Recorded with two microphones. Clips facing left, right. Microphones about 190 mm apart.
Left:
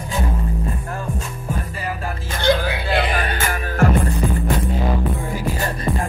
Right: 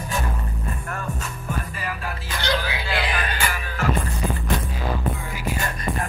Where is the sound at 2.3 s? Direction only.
50° left (ahead or behind).